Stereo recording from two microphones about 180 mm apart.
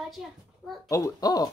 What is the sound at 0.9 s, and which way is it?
Speech, 20° left (ahead or behind).